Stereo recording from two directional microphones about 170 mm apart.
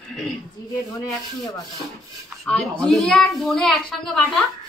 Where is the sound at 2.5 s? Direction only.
5° left (ahead or behind).